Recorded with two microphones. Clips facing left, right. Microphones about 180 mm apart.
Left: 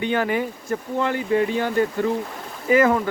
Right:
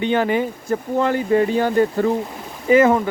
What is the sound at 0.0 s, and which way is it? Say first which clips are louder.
Speech: right 4 dB; 25° right (ahead or behind).